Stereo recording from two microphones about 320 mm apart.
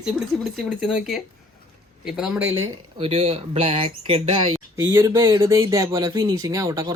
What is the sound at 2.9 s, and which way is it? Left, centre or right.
Speech, centre.